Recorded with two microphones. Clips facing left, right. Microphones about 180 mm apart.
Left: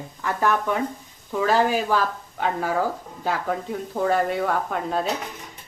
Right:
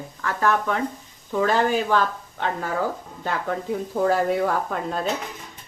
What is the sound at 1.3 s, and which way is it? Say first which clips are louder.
Speech: even; 5° left (ahead or behind).